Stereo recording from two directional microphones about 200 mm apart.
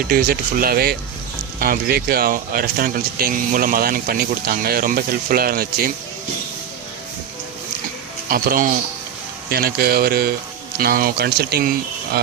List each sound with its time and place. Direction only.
0.1 s speech: 50° right (ahead or behind)
8.3 s speech: 45° right (ahead or behind)